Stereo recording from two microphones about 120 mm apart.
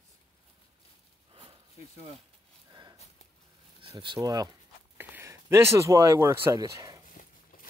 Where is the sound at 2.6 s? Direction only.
35° right (ahead or behind).